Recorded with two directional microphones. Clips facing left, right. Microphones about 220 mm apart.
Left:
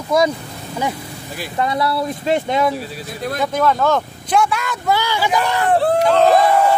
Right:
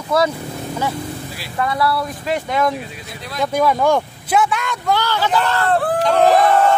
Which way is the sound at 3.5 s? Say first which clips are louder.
Right 2 dB; 10° right (ahead or behind).